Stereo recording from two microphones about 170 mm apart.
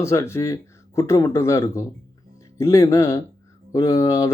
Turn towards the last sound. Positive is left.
turn(degrees=20)  # may be behind; listen again after turning